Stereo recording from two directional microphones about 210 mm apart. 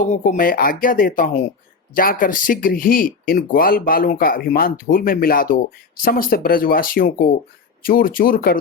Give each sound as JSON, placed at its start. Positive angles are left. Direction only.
{"t": 0.0, "sound": "speech", "side_deg": 35}